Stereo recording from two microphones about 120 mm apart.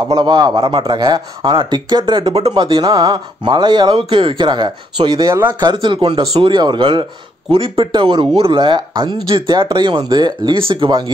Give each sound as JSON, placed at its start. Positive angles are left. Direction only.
{"t": 0.1, "sound": "speech", "side_deg": -35}
{"t": 2.3, "sound": "speech", "side_deg": -50}
{"t": 2.9, "sound": "speech", "side_deg": -35}